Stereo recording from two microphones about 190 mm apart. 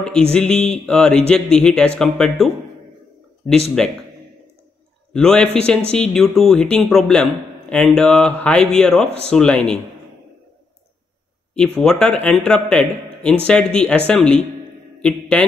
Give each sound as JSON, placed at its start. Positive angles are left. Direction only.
{"t": 0.3, "sound": "speech", "side_deg": 5}
{"t": 3.8, "sound": "speech", "side_deg": 5}
{"t": 5.1, "sound": "speech", "side_deg": 5}
{"t": 11.5, "sound": "a man's voice", "side_deg": 5}